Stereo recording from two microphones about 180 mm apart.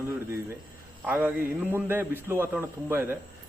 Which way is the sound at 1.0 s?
10° right (ahead or behind).